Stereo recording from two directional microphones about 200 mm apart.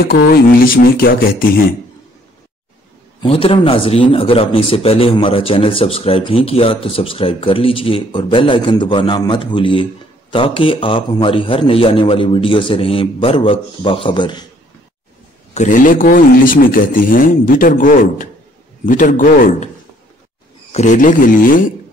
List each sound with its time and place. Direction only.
0.0 s speech: 50° left (ahead or behind)
3.2 s a man's voice: 25° left (ahead or behind)
15.5 s speech: 40° left (ahead or behind)
20.7 s speech: 40° left (ahead or behind)